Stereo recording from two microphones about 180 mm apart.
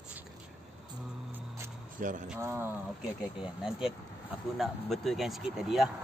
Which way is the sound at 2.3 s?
15° right (ahead or behind).